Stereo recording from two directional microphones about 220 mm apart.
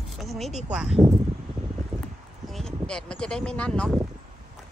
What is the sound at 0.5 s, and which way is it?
Speech, 30° right (ahead or behind).